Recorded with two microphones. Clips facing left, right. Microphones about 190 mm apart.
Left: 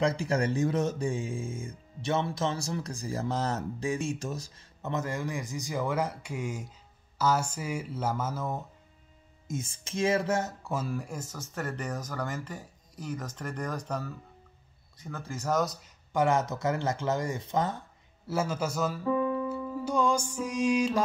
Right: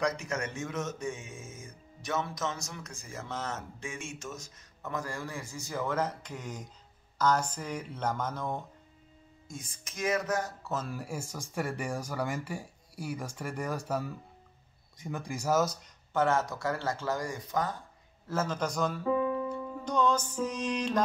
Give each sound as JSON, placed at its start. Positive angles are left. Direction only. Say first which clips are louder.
{"t": 0.0, "sound": "speech", "louder": "left 5 dB", "side_deg": 30}
{"t": 9.5, "sound": "speech", "louder": "left 10 dB", "side_deg": 25}
{"t": 10.6, "sound": "speech", "louder": "left 2 dB", "side_deg": 10}
{"t": 10.9, "sound": "speech", "louder": "left 2 dB", "side_deg": -5}
{"t": 16.1, "sound": "speech", "louder": "left 2 dB", "side_deg": 15}
{"t": 18.2, "sound": "speech", "louder": "left 2 dB", "side_deg": 10}
{"t": 19.5, "sound": "music", "louder": "left 2 dB", "side_deg": 5}